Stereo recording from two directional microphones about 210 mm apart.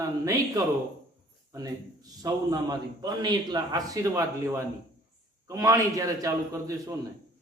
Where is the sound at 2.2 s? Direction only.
20° right (ahead or behind).